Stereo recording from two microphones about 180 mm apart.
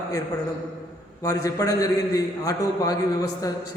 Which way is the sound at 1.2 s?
20° left (ahead or behind).